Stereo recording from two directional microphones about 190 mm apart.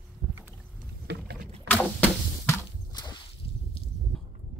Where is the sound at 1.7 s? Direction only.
10° left (ahead or behind).